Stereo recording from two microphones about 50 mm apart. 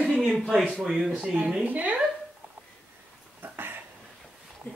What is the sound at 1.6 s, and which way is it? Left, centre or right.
Speech, right.